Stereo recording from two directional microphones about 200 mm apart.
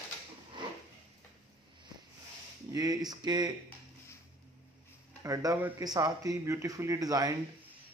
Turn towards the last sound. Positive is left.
turn(degrees=-20)  # may be behind; listen again after turning